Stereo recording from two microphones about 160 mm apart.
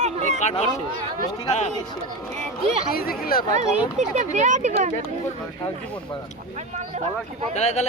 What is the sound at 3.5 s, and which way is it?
Speech, 50° right (ahead or behind).